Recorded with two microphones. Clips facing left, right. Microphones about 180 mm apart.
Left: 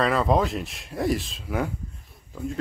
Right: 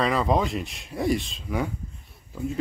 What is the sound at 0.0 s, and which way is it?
Speech, centre (ahead or behind).